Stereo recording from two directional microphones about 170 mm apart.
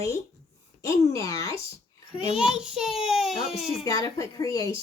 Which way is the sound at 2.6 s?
5° right (ahead or behind).